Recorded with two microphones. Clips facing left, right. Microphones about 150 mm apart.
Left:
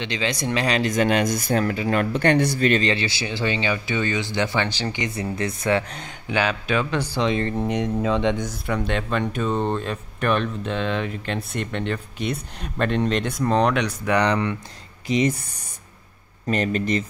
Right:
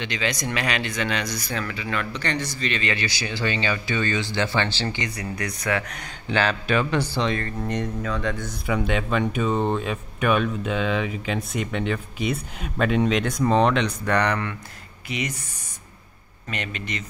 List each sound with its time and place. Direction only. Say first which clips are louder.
0.0 s speech: left 2 dB; 25° left (ahead or behind); by 2.8 s 55° left (ahead or behind)
2.8 s speech: left 4 dB; 25° left (ahead or behind)
6.2 s speech: even; 10° left (ahead or behind)
6.7 s speech: right 2 dB; centre (ahead or behind)
7.0 s speech: left 2 dB; 15° left (ahead or behind)
8.0 s speech: left 6 dB; 25° left (ahead or behind)
8.6 s speech: right 2 dB; 5° right (ahead or behind)
13.7 s speech: left 1 dB; 10° left (ahead or behind)
15.0 s speech: left 9 dB; 35° left (ahead or behind)
16.4 s speech: left 10 dB; 40° left (ahead or behind)